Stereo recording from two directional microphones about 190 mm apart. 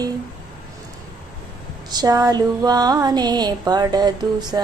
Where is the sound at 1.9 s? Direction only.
20° right (ahead or behind).